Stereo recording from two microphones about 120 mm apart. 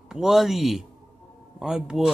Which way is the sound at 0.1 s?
5° right (ahead or behind).